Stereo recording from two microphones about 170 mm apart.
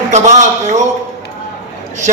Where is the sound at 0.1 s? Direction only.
45° right (ahead or behind).